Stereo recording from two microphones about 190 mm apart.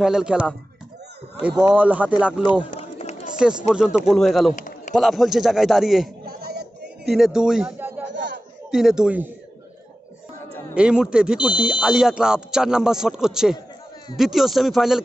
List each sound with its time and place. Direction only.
0.0 s speech: 5° right (ahead or behind)
2.7 s run: 35° left (ahead or behind)
3.3 s speech: 5° right (ahead or behind)
4.6 s a sound: 40° left (ahead or behind)
4.9 s speech: centre (ahead or behind)
6.2 s a sound: 55° right (ahead or behind)
7.1 s a man's voice: centre (ahead or behind)
10.7 s speech: 5° right (ahead or behind)